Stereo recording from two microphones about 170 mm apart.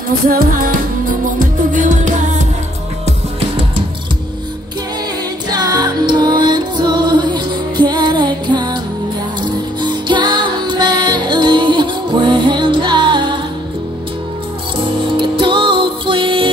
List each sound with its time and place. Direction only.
0.3 s music: 55° right (ahead or behind)
5.5 s music: 25° right (ahead or behind)
14.8 s music: 30° right (ahead or behind)